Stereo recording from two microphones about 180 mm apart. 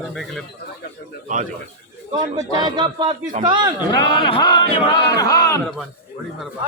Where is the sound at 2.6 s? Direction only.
25° right (ahead or behind).